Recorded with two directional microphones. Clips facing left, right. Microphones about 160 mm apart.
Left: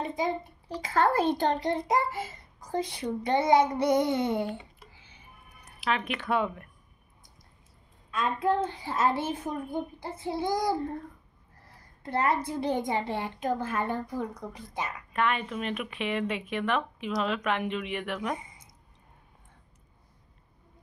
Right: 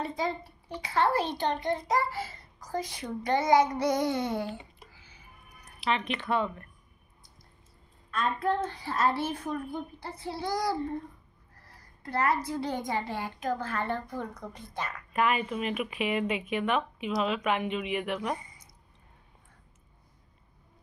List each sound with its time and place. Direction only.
0.0 s a sound: 15° left (ahead or behind)
0.7 s a child's voice: 45° left (ahead or behind)
1.7 s a child's voice: 25° left (ahead or behind)
4.9 s a sound: 25° left (ahead or behind)
5.9 s speech: 5° left (ahead or behind)
8.1 s a child's voice: 15° left (ahead or behind)
12.0 s a woman's voice: 25° left (ahead or behind)
15.1 s speech: 5° right (ahead or behind)